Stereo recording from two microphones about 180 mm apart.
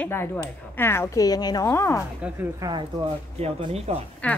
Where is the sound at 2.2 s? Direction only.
5° right (ahead or behind).